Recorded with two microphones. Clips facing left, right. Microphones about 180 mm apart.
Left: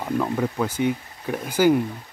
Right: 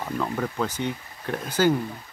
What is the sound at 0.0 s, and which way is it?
Speech, 10° left (ahead or behind).